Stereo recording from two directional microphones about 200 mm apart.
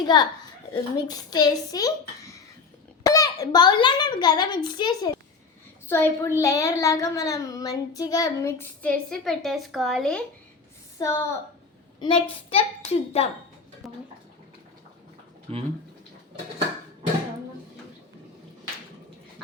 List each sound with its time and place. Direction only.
0.0 s a child's voice: 20° left (ahead or behind); by 10.2 s 5° left (ahead or behind)
10.9 s a woman's voice: 15° left (ahead or behind)
13.8 s a sound: centre (ahead or behind)
15.5 s speech: 30° right (ahead or behind)